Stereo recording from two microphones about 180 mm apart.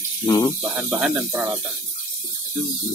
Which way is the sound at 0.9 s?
5° right (ahead or behind).